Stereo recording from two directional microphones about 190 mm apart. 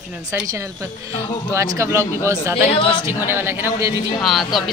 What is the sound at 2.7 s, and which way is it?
Speech, 25° left (ahead or behind).